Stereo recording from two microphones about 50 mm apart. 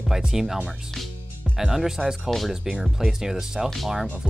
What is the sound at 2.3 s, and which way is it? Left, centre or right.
Speech, centre.